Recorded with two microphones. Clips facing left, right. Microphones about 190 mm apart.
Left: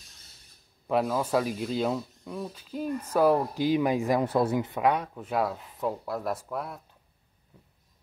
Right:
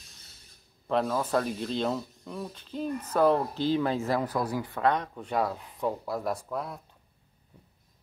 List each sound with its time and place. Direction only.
0.8 s speech: 5° left (ahead or behind)
4.2 s speech: 25° left (ahead or behind)
4.8 s speech: 5° left (ahead or behind)